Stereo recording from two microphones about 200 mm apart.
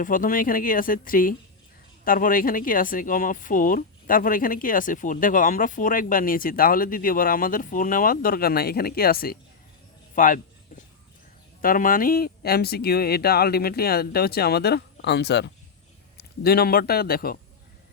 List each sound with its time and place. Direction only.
0.0 s speech: 45° left (ahead or behind)
10.2 s a sound: 40° left (ahead or behind)
11.6 s a man's voice: 45° left (ahead or behind)